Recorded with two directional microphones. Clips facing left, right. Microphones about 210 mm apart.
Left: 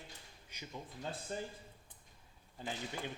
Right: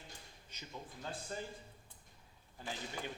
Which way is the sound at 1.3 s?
20° left (ahead or behind).